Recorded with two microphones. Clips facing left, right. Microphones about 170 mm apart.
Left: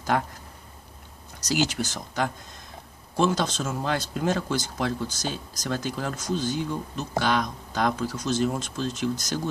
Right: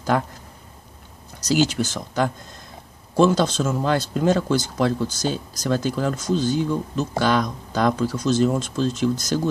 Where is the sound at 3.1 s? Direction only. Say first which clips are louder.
Right 6 dB; 35° right (ahead or behind).